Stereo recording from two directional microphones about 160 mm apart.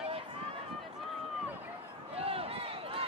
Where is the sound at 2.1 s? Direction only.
35° right (ahead or behind).